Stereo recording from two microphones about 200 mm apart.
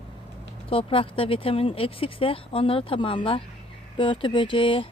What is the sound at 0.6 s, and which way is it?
Speech, 25° left (ahead or behind).